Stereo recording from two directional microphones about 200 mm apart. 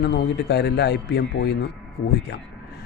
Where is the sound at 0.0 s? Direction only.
55° left (ahead or behind).